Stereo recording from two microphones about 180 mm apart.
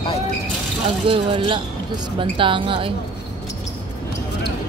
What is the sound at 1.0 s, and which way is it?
Speech, 30° right (ahead or behind).